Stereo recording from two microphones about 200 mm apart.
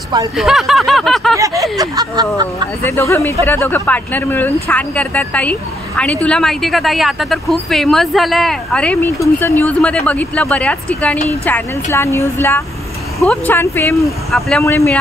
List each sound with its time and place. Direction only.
0.4 s a woman's voice: centre (ahead or behind)
1.6 s speech: 20° right (ahead or behind)
2.8 s a woman's voice: 15° left (ahead or behind)
13.9 s a woman's voice: centre (ahead or behind)
14.6 s speech: 15° left (ahead or behind)